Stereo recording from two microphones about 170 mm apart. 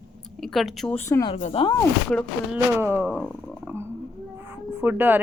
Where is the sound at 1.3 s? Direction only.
35° left (ahead or behind).